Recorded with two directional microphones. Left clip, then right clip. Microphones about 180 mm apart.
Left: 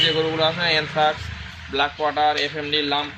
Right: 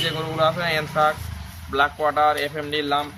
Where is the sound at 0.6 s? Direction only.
35° right (ahead or behind).